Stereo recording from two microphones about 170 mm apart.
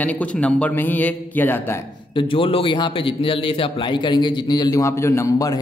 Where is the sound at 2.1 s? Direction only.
30° left (ahead or behind).